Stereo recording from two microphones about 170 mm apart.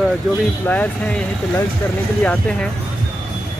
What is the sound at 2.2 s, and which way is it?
Speech, 10° left (ahead or behind).